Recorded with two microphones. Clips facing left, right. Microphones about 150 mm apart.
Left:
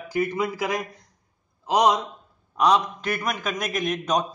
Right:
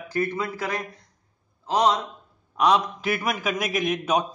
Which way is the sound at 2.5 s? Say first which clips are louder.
Even; centre (ahead or behind).